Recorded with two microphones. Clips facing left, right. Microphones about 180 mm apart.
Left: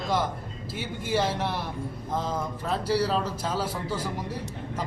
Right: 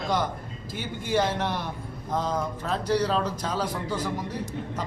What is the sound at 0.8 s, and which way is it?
A man's voice, 5° left (ahead or behind).